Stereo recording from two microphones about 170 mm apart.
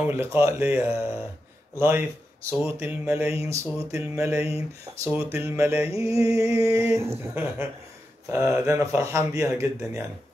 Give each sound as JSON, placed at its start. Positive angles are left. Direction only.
{"t": 0.0, "sound": "speech", "side_deg": -10}
{"t": 0.9, "sound": "speech", "side_deg": 35}
{"t": 1.8, "sound": "speech", "side_deg": -15}
{"t": 6.2, "sound": "a sound", "side_deg": -20}
{"t": 7.3, "sound": "speech", "side_deg": -15}